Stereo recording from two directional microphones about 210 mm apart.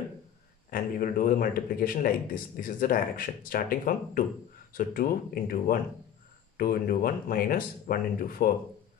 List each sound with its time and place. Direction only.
0.7 s a man's voice: 45° left (ahead or behind)